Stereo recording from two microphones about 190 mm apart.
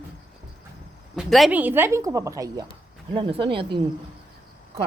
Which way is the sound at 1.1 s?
Centre (ahead or behind).